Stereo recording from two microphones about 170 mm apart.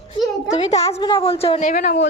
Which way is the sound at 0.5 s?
40° left (ahead or behind).